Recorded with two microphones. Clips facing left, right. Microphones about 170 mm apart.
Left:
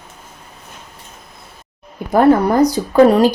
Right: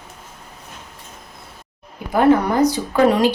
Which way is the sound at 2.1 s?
40° left (ahead or behind).